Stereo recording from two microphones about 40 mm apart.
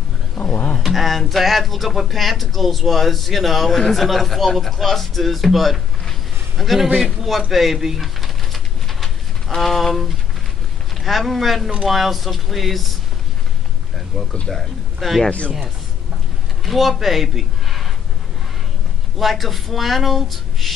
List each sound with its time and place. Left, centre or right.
0.4 s a sound: centre
0.7 s speech: centre
7.5 s a sound: centre
11.0 s speech: centre
14.1 s speech: centre
15.2 s speech: left
16.6 s a man's voice: centre
19.1 s speech: centre